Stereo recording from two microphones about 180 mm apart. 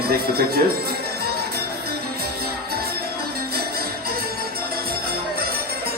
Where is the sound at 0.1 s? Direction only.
60° right (ahead or behind).